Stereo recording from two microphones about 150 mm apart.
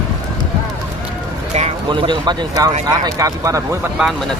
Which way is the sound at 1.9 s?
30° right (ahead or behind).